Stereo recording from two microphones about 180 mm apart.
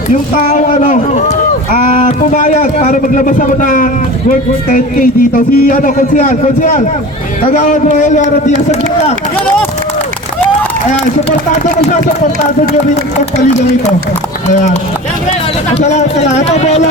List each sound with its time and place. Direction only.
0.1 s a man's voice: 45° left (ahead or behind)
10.8 s a man's voice: 40° left (ahead or behind)
14.4 s a man's voice: 40° left (ahead or behind)
15.8 s a man's voice: 40° left (ahead or behind)